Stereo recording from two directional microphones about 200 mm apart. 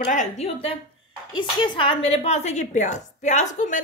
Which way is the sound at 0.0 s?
40° left (ahead or behind).